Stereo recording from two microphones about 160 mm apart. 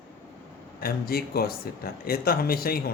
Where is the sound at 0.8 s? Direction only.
70° left (ahead or behind).